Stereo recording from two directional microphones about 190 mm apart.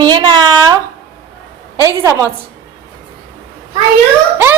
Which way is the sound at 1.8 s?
15° right (ahead or behind).